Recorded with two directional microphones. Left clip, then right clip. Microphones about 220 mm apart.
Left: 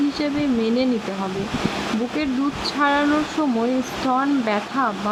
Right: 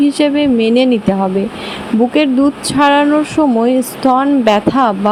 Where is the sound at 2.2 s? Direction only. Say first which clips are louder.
Right 10 dB; 25° right (ahead or behind).